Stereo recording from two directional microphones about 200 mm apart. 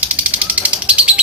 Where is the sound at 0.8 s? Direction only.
5° right (ahead or behind).